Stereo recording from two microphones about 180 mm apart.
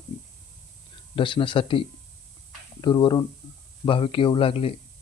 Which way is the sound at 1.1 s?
25° left (ahead or behind).